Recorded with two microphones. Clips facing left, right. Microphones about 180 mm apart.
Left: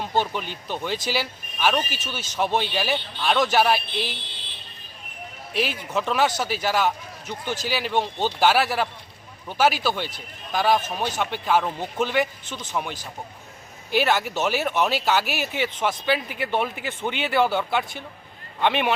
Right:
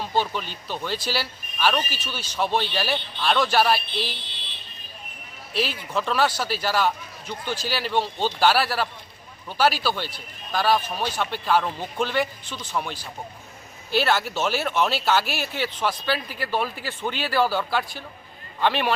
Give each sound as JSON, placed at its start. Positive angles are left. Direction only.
{"t": 0.0, "sound": "speech", "side_deg": 15}
{"t": 5.5, "sound": "speech", "side_deg": 15}